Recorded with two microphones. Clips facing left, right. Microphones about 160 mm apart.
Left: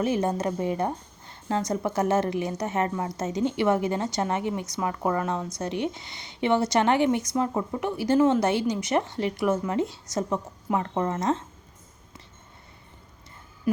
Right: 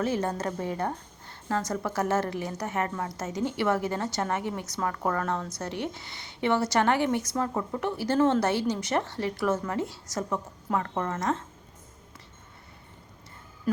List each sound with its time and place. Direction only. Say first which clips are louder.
0.0 s a woman's voice: left 3 dB; 15° left (ahead or behind)